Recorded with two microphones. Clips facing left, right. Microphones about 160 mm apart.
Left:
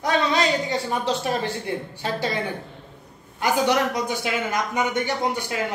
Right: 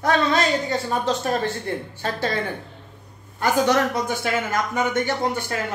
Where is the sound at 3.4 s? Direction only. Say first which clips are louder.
Right 2 dB; 15° left (ahead or behind).